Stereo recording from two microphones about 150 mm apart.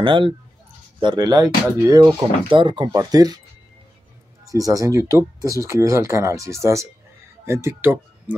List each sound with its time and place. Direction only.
0.0 s speech: 35° right (ahead or behind)
2.5 s speech: 30° right (ahead or behind)
4.5 s speech: 25° right (ahead or behind)